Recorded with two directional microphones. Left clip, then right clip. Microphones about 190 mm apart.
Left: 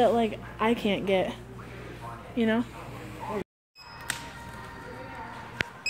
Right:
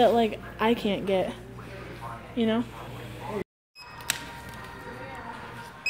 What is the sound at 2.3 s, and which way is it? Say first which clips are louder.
Speech: even; 5° left (ahead or behind).